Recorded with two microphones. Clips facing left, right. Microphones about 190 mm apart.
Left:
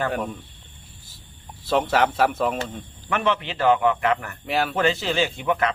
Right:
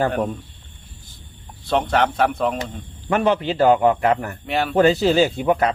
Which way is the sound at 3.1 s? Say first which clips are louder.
Right 5 dB; 35° right (ahead or behind).